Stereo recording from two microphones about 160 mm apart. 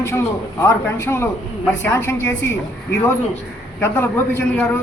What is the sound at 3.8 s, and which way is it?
A man's voice, 15° left (ahead or behind).